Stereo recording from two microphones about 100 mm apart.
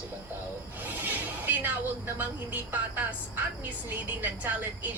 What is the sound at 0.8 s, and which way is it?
A woman's voice, 15° right (ahead or behind).